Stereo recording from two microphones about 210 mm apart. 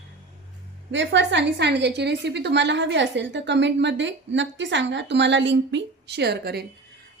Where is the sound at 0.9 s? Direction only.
60° right (ahead or behind).